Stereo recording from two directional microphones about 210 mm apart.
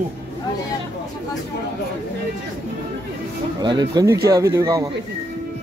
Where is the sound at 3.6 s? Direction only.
20° right (ahead or behind).